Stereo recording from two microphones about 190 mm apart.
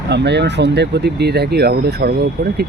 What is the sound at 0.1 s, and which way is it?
Speech, 65° right (ahead or behind).